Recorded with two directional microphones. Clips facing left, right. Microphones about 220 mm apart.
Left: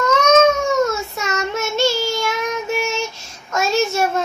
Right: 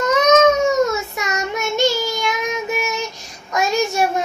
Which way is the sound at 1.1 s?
15° right (ahead or behind).